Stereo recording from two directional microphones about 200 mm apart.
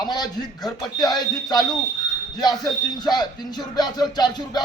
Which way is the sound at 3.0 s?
20° left (ahead or behind).